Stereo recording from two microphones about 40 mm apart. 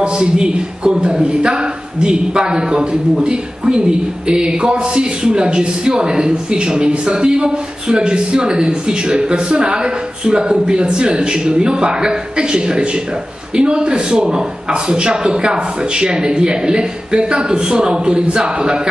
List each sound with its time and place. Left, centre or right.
0.0 s a man's voice: right